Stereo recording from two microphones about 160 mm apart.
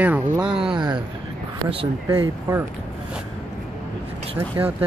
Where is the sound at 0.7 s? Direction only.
30° right (ahead or behind).